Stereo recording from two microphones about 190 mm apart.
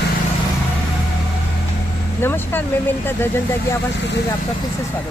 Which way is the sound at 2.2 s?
10° left (ahead or behind).